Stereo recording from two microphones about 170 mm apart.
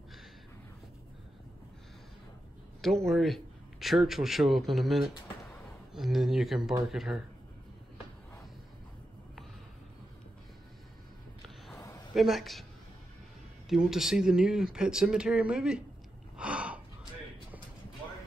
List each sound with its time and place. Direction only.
2.8 s a man's voice: centre (ahead or behind)
11.7 s a sound: 15° left (ahead or behind)
12.2 s a man's voice: centre (ahead or behind)
13.7 s a man's voice: centre (ahead or behind)
16.3 s gasp: 5° right (ahead or behind)